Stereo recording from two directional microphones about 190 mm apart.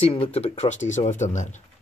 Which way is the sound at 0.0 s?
30° left (ahead or behind).